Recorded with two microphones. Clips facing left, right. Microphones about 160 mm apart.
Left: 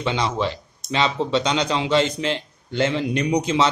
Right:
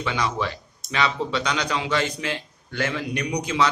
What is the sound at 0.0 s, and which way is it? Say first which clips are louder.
Speech: left 3 dB; 25° left (ahead or behind).